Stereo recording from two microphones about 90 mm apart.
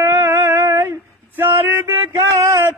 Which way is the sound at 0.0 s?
30° right (ahead or behind).